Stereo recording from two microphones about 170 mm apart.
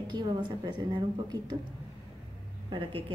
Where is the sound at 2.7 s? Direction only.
30° right (ahead or behind).